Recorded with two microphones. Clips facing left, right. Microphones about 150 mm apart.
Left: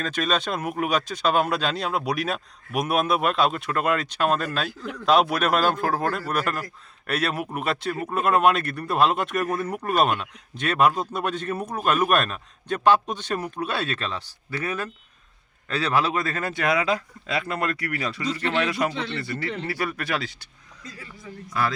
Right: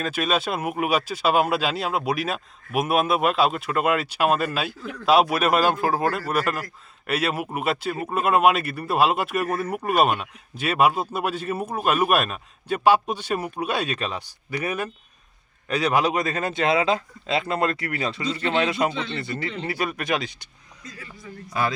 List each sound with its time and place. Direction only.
0.0 s a man's voice: 10° right (ahead or behind)